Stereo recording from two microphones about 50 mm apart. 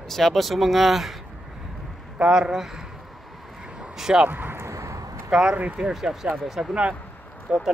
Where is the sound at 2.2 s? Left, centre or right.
Centre.